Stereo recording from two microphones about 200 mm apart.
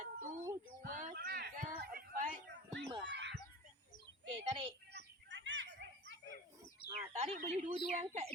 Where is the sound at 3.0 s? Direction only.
60° right (ahead or behind).